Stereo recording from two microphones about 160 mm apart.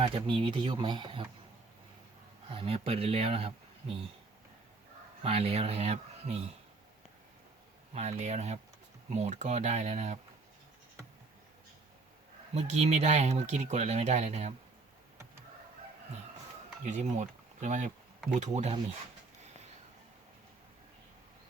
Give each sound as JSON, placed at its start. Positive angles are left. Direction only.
{"t": 0.2, "sound": "speech", "side_deg": -30}
{"t": 2.5, "sound": "speech", "side_deg": -35}
{"t": 5.2, "sound": "speech", "side_deg": -40}
{"t": 7.9, "sound": "speech", "side_deg": -45}
{"t": 12.5, "sound": "speech", "side_deg": -45}
{"t": 16.8, "sound": "speech", "side_deg": -45}